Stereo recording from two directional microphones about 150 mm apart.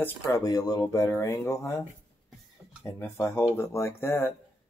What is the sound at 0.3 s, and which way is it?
Speech, 25° left (ahead or behind).